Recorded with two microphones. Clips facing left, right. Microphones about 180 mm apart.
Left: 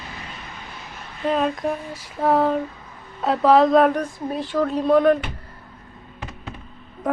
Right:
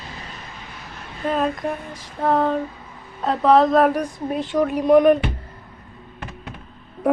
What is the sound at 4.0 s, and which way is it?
Speech, 20° right (ahead or behind).